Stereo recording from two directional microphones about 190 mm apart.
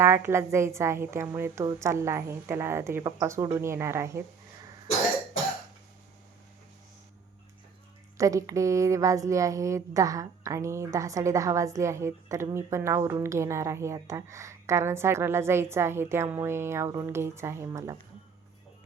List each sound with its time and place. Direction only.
0.0 s a woman's voice: 15° right (ahead or behind)
8.2 s a woman's voice: 15° right (ahead or behind)